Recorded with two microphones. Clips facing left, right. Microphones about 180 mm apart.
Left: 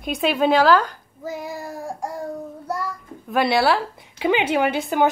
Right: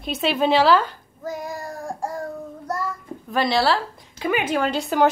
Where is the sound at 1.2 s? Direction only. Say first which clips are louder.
Even; 10° left (ahead or behind).